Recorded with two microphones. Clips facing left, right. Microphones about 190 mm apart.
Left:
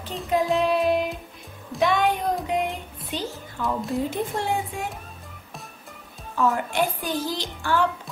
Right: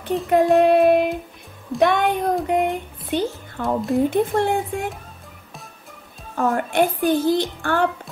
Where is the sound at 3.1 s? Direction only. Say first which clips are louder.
Right 8 dB; 55° right (ahead or behind).